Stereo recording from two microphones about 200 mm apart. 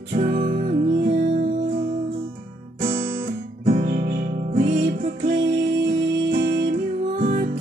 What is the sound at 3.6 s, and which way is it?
Music, 40° right (ahead or behind).